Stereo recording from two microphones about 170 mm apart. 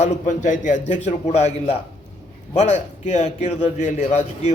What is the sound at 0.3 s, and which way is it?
A man's voice, 50° left (ahead or behind).